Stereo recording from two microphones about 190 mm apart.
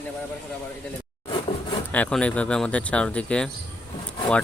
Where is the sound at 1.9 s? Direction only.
5° left (ahead or behind).